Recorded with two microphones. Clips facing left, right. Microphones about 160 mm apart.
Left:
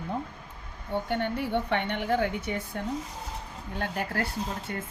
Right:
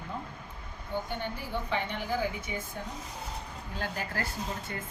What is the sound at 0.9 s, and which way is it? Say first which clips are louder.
A woman's voice: left 6 dB; 70° left (ahead or behind).